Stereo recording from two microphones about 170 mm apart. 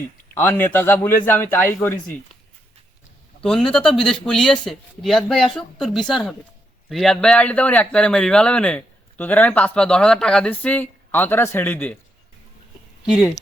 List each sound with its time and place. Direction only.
0.3 s a man's voice: 10° left (ahead or behind)
3.4 s a man's voice: 5° left (ahead or behind)
13.1 s speech: 5° right (ahead or behind)